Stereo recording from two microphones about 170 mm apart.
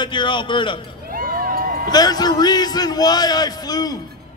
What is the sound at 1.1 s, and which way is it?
Vehicle, 55° right (ahead or behind).